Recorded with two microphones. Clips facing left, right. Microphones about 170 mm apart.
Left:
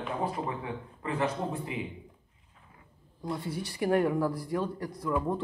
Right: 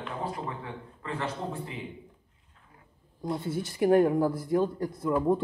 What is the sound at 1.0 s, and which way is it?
Speech, 15° left (ahead or behind).